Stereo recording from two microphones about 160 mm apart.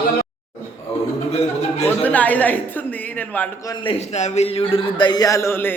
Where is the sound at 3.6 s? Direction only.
30° left (ahead or behind).